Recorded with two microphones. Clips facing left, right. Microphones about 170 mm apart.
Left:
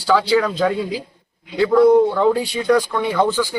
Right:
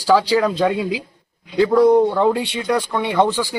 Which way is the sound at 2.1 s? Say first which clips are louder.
Left 1 dB; 25° right (ahead or behind).